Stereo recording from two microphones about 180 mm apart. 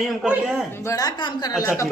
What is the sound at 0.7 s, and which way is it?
A woman's voice, 15° left (ahead or behind).